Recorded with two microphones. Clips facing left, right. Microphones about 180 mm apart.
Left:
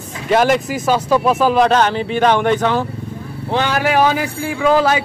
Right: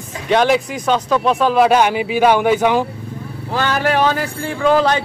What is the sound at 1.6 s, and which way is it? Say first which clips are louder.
Speech: right 1 dB; 10° right (ahead or behind).